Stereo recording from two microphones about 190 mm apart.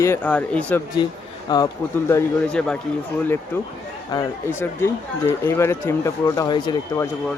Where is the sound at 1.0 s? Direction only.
25° left (ahead or behind).